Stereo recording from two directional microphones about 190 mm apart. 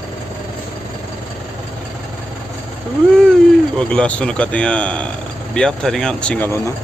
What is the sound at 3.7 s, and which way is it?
A man's voice, 5° left (ahead or behind).